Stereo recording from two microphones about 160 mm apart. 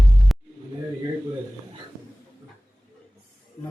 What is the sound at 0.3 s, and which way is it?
Music, centre (ahead or behind).